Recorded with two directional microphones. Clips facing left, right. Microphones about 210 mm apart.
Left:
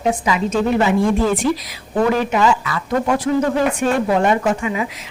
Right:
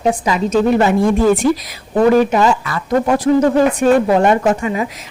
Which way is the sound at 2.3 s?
40° right (ahead or behind).